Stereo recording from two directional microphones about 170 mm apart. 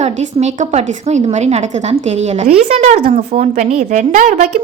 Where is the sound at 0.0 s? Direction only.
40° right (ahead or behind).